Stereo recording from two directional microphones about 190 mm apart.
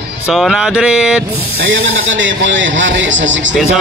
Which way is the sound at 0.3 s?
Centre (ahead or behind).